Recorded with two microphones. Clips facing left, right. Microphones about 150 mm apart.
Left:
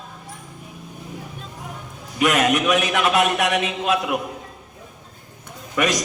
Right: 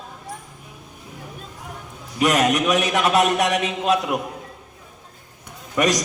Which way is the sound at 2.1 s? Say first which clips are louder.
Even; 35° right (ahead or behind).